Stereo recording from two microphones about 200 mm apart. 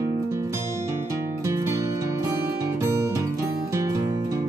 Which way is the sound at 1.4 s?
15° right (ahead or behind).